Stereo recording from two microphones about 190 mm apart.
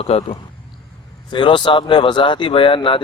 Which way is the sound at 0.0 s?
30° left (ahead or behind).